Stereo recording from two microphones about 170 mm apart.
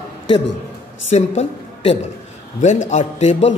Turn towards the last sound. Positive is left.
turn(degrees=40)  # may be behind; listen again after turning